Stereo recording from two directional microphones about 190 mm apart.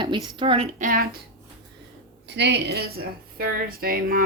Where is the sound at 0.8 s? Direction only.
50° right (ahead or behind).